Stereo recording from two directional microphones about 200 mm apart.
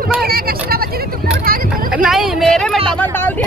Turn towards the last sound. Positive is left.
turn(degrees=10)  # may be behind; listen again after turning